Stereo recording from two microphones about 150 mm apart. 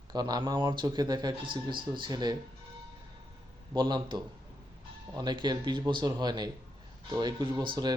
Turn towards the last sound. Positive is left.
turn(degrees=-30)  # may be behind; listen again after turning